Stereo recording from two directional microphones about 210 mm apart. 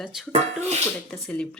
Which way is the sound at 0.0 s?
Centre (ahead or behind).